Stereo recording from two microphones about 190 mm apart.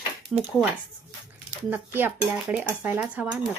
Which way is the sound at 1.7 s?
10° right (ahead or behind).